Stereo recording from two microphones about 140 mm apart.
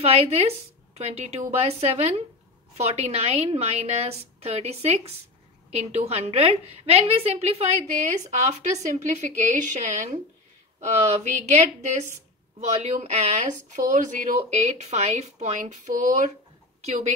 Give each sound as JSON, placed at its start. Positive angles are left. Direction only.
{"t": 0.0, "sound": "a woman's voice", "side_deg": -50}
{"t": 14.6, "sound": "speech", "side_deg": -50}
{"t": 16.8, "sound": "speech", "side_deg": -50}